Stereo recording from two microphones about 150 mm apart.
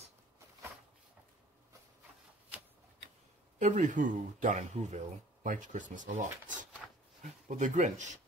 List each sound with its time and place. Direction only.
3.5 s speech: 55° right (ahead or behind)
6.4 s a sound: 60° right (ahead or behind)
7.4 s speech: 55° right (ahead or behind)